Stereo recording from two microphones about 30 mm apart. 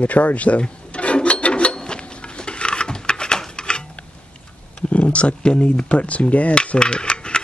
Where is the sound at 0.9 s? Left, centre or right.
Left.